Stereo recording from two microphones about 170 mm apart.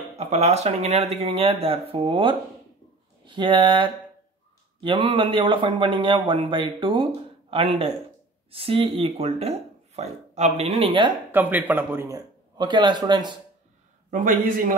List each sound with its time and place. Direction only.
0.1 s a man's voice: 40° right (ahead or behind)
11.3 s a man's voice: 10° right (ahead or behind)
14.1 s a man's voice: 50° right (ahead or behind)